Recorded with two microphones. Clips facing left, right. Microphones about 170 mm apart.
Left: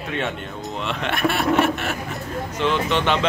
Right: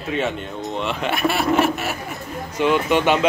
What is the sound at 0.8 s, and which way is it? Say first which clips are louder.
Speech: right 1 dB; centre (ahead or behind).